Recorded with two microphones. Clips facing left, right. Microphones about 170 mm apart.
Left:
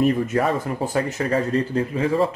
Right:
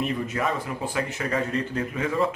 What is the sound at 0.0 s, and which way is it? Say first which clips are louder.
Speech: left 7 dB; 45° left (ahead or behind).